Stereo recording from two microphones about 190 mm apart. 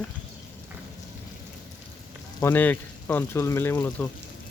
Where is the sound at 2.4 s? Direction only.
10° left (ahead or behind).